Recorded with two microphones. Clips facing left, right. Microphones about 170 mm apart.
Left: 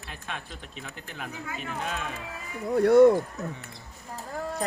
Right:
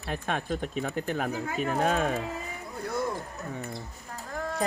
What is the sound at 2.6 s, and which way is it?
Speech, 75° left (ahead or behind).